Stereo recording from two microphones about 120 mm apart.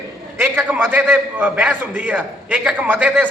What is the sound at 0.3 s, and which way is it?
A man's voice, 10° right (ahead or behind).